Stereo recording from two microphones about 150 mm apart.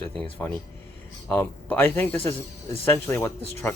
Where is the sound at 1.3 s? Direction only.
10° left (ahead or behind).